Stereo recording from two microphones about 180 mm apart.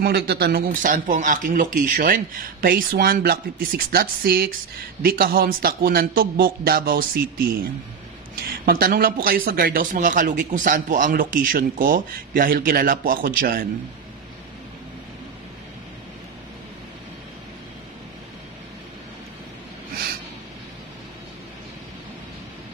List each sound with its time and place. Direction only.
0.0 s speech: 65° right (ahead or behind)
8.6 s speech: 55° right (ahead or behind)